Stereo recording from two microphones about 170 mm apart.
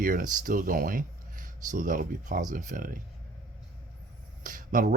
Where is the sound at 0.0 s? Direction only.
55° right (ahead or behind).